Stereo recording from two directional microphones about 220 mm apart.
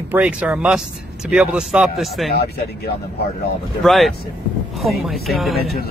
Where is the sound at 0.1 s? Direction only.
5° right (ahead or behind).